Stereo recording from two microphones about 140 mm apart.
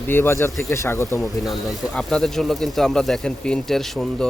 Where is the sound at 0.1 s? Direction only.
15° left (ahead or behind).